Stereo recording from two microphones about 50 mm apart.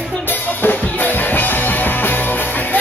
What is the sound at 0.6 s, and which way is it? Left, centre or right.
Music, left.